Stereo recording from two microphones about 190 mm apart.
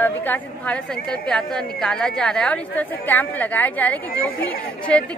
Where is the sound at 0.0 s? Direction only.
10° left (ahead or behind).